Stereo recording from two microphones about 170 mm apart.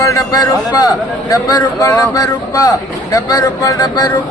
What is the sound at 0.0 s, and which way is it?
A man's voice, 20° left (ahead or behind).